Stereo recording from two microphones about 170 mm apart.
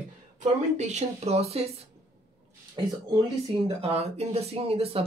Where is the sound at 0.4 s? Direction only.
45° right (ahead or behind).